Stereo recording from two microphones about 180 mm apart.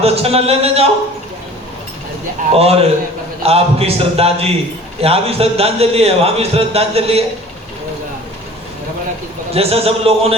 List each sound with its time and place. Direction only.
0.0 s a man's voice: 35° right (ahead or behind)
2.6 s a man's voice: 35° right (ahead or behind)
9.5 s a man's voice: 35° right (ahead or behind)